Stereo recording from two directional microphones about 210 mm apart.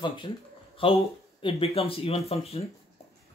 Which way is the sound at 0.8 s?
25° left (ahead or behind).